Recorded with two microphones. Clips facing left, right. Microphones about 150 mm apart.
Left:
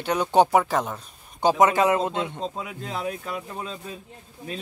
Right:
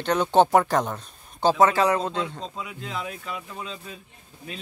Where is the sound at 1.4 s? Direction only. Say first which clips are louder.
Even; 15° left (ahead or behind).